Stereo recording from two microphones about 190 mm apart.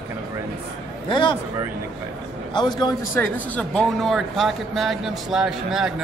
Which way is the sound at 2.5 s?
20° left (ahead or behind).